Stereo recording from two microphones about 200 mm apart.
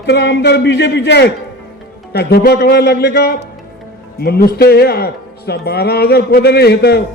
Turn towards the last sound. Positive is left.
turn(degrees=55)  # may be behind; listen again after turning